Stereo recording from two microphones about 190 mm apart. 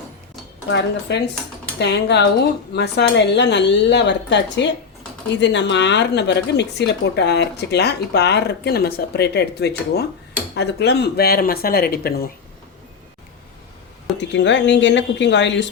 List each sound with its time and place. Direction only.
0.7 s speech: 70° left (ahead or behind); by 12.3 s 55° left (ahead or behind)
14.2 s speech: 70° left (ahead or behind)